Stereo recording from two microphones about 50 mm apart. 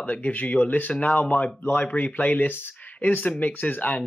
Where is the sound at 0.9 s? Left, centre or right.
Centre.